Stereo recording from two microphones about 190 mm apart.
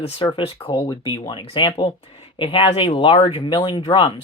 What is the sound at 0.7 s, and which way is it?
Speech, 20° left (ahead or behind).